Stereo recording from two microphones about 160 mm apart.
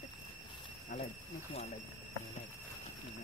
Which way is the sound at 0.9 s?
50° left (ahead or behind).